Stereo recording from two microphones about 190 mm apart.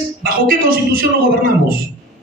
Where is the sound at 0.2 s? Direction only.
50° right (ahead or behind).